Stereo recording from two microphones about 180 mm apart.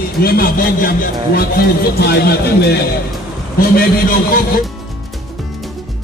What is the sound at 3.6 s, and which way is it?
Speech, 55° left (ahead or behind).